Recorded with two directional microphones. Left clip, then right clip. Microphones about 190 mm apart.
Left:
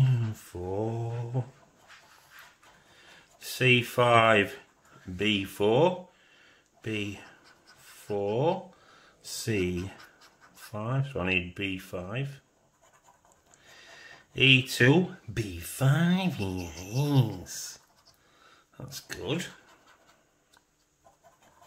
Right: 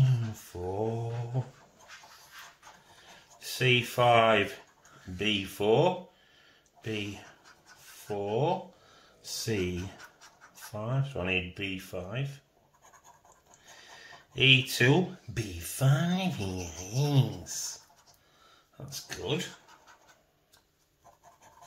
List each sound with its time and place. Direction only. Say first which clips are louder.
0.0 s mantra: left 1 dB; 35° left (ahead or behind)
3.3 s speech: left 3 dB; 35° left (ahead or behind)
8.1 s speech: left 2 dB; 35° left (ahead or behind)
13.7 s speech: left 1 dB; 30° left (ahead or behind)
18.8 s speech: even; 35° left (ahead or behind)